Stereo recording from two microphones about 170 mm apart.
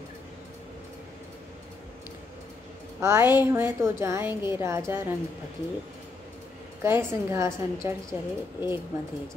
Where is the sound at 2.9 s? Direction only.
15° right (ahead or behind).